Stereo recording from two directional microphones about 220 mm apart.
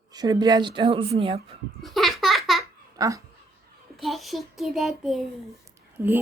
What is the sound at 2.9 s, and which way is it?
Speech, 15° right (ahead or behind).